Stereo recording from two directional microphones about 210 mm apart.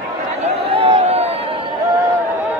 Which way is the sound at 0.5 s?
25° right (ahead or behind).